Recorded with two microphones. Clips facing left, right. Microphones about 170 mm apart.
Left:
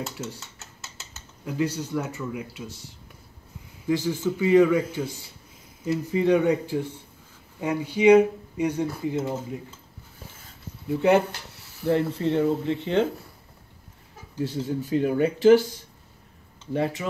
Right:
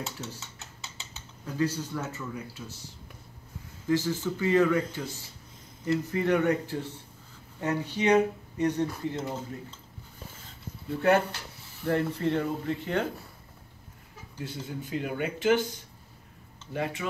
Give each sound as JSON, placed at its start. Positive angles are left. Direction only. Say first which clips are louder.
{"t": 0.0, "sound": "dishes", "louder": "left 4 dB", "side_deg": 0}
{"t": 1.4, "sound": "speech", "louder": "left 2 dB", "side_deg": 15}
{"t": 3.8, "sound": "speech", "louder": "left 3 dB", "side_deg": 15}
{"t": 10.9, "sound": "speech", "louder": "left 4 dB", "side_deg": 15}
{"t": 14.4, "sound": "speech", "louder": "left 9 dB", "side_deg": 35}